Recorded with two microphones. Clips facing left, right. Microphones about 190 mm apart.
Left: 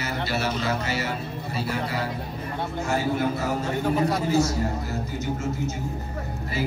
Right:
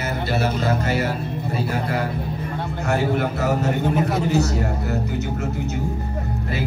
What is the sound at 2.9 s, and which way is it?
A man's voice, 65° right (ahead or behind).